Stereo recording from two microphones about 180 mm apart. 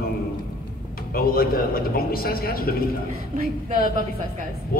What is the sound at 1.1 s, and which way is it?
A man's voice, 55° left (ahead or behind).